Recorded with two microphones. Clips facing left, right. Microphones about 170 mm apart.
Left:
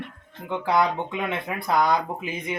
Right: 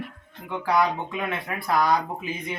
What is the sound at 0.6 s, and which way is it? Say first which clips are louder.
Speech: even; 25° left (ahead or behind).